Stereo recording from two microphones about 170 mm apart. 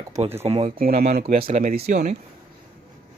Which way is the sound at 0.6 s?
55° right (ahead or behind).